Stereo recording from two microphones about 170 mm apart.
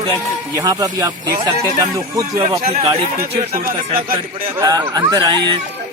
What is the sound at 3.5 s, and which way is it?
Speech, 60° right (ahead or behind).